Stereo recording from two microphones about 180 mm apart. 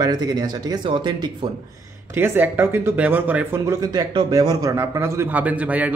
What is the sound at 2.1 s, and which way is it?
A man's voice, 10° right (ahead or behind).